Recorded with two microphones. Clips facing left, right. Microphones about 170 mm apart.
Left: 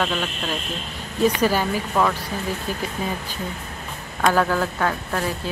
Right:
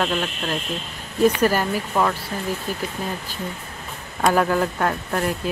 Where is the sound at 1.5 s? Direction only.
5° right (ahead or behind).